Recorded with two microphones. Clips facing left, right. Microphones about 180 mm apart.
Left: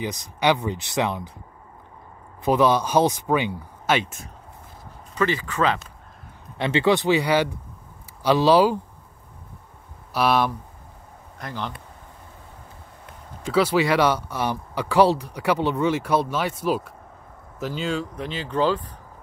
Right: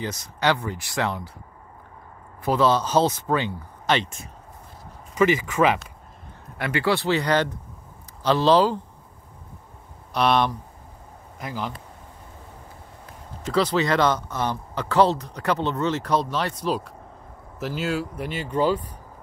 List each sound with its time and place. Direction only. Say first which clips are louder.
0.0 s speech: left 2 dB; 15° left (ahead or behind)
2.4 s speech: left 1 dB; 15° left (ahead or behind)
5.1 s speech: right 4 dB; 15° right (ahead or behind)
6.6 s speech: left 3 dB; 20° left (ahead or behind)
10.1 s speech: even; 5° left (ahead or behind)
11.3 s speech: right 1 dB; 5° right (ahead or behind)
13.5 s speech: left 2 dB; 10° left (ahead or behind); by 18.9 s 10° right (ahead or behind)